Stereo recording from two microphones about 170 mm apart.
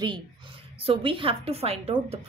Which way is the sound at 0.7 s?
30° right (ahead or behind).